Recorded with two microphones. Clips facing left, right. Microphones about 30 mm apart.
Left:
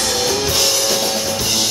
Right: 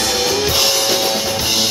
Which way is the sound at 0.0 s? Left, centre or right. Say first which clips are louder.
Right 1 dB; centre.